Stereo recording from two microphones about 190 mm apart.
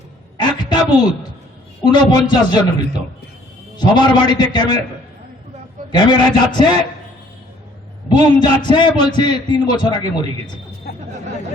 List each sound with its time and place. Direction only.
0.3 s a sound: 25° left (ahead or behind)
1.8 s a man's voice: 25° left (ahead or behind)
5.9 s a man's voice: 25° left (ahead or behind)
8.4 s a man's voice: 25° left (ahead or behind)
10.8 s chatter: 55° left (ahead or behind)